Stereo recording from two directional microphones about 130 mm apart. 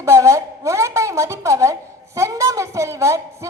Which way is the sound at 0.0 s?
25° right (ahead or behind).